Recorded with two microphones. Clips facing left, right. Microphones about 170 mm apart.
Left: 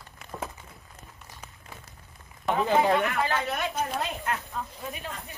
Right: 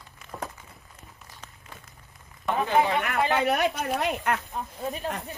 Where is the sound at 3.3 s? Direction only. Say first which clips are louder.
Right 5 dB; 65° right (ahead or behind).